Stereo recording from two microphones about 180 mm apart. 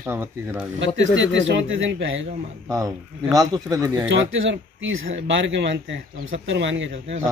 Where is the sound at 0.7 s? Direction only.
90° right.